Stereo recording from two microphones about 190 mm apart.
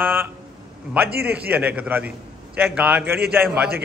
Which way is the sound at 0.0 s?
10° right (ahead or behind).